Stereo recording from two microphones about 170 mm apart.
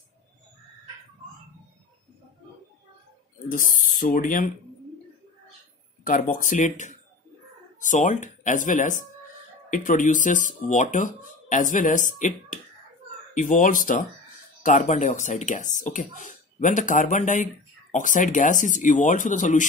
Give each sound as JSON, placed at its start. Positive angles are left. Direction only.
{"t": 3.4, "sound": "speech", "side_deg": 50}
{"t": 6.0, "sound": "speech", "side_deg": 50}